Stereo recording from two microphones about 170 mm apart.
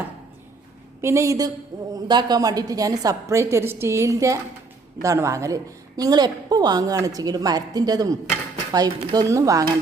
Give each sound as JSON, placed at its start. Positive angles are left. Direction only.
{"t": 1.0, "sound": "a woman's voice", "side_deg": -15}